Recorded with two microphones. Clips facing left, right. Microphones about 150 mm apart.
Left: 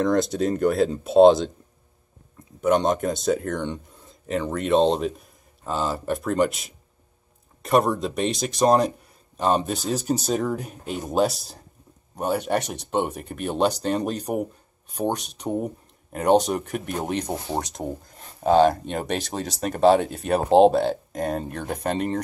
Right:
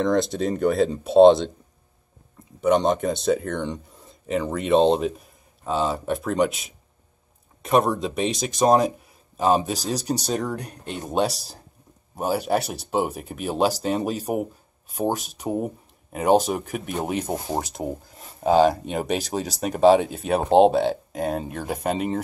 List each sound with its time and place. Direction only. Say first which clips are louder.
0.0 s speech: even; centre (ahead or behind)
2.6 s speech: right 1 dB; centre (ahead or behind)